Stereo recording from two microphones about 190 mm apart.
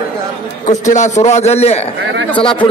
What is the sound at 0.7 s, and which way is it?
A man's voice, 40° left (ahead or behind).